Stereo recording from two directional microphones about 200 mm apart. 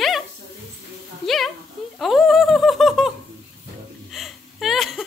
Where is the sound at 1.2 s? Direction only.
Centre (ahead or behind).